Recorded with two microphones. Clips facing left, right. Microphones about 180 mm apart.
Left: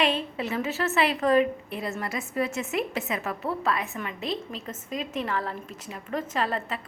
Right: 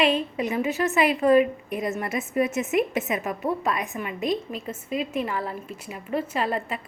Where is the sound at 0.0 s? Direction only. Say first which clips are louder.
Right 4 dB; 10° right (ahead or behind).